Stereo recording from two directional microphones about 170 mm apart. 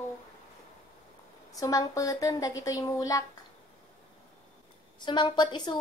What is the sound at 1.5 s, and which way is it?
Speech, 20° left (ahead or behind).